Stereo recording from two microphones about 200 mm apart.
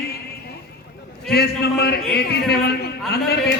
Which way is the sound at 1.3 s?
50° left (ahead or behind).